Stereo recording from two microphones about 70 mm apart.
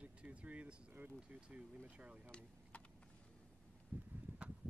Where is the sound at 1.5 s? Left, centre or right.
Centre.